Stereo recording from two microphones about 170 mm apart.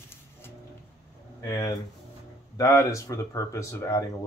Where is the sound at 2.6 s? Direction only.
20° left (ahead or behind).